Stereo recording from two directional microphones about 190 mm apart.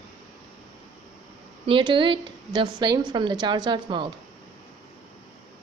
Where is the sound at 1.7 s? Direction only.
25° right (ahead or behind).